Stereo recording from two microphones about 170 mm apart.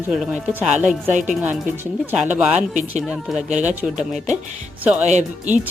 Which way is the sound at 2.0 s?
10° right (ahead or behind).